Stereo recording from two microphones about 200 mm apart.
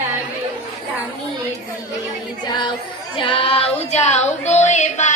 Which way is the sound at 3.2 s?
25° left (ahead or behind).